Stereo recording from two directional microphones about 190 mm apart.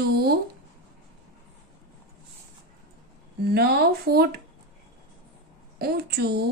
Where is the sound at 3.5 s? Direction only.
55° right (ahead or behind).